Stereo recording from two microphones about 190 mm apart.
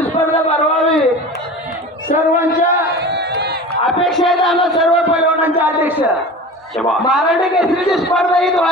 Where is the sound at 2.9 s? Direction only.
60° right (ahead or behind).